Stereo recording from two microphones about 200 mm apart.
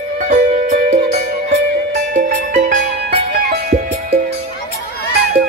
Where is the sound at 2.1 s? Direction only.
40° right (ahead or behind).